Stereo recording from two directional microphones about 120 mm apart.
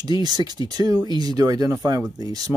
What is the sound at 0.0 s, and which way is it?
Speech, 35° right (ahead or behind).